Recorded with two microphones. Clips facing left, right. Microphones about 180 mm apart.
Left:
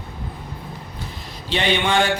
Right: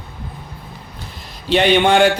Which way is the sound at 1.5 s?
60° right (ahead or behind).